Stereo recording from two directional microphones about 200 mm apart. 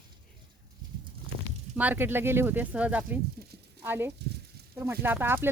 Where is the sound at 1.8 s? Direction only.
10° right (ahead or behind).